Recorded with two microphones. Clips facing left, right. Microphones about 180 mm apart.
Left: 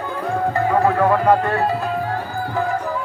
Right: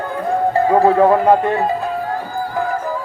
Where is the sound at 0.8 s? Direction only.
25° right (ahead or behind).